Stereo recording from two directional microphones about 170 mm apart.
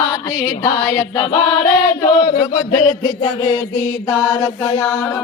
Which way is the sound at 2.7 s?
25° left (ahead or behind).